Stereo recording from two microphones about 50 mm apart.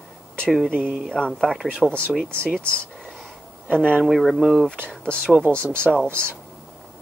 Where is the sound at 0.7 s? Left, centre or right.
Right.